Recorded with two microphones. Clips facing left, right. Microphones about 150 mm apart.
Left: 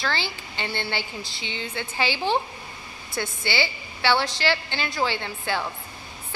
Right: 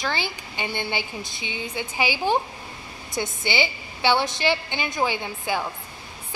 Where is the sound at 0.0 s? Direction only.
15° right (ahead or behind).